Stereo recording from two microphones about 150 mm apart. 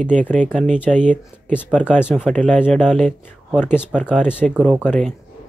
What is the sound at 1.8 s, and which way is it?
Speech, 15° left (ahead or behind).